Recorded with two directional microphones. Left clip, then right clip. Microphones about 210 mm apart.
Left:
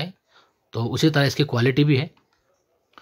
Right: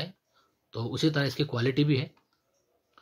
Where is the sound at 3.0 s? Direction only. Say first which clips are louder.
Left 10 dB; 25° left (ahead or behind).